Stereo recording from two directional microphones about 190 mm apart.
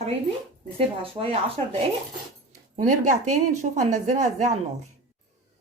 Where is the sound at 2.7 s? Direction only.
40° right (ahead or behind).